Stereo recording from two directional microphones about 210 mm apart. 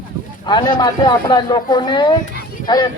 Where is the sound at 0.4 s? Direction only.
20° left (ahead or behind).